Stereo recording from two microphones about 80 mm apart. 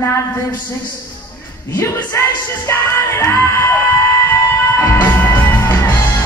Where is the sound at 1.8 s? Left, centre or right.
Left.